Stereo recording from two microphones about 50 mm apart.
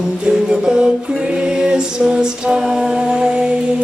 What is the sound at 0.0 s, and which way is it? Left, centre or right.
Music, centre.